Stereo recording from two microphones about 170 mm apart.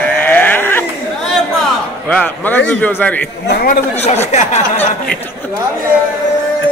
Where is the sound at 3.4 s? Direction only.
60° left (ahead or behind).